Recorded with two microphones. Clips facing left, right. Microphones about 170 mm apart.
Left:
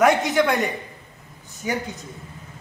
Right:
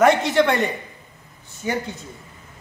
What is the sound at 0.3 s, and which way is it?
A man's voice, 5° left (ahead or behind).